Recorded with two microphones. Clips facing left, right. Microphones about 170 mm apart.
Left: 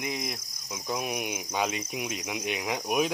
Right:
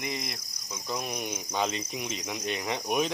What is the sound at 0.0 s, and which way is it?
Cricket, 5° left (ahead or behind).